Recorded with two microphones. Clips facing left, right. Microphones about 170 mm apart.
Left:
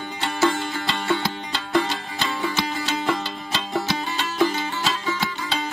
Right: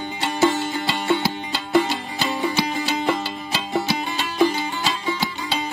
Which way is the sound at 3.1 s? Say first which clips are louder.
Right 2 dB; centre (ahead or behind).